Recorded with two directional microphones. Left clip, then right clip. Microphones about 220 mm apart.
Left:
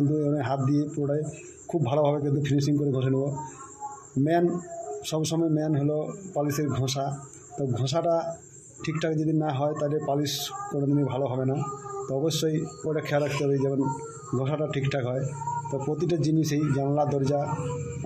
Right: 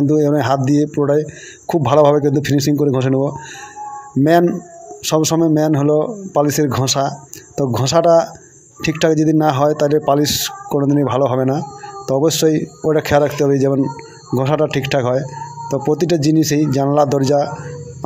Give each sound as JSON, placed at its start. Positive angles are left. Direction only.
{"t": 0.1, "sound": "a man's voice", "side_deg": -40}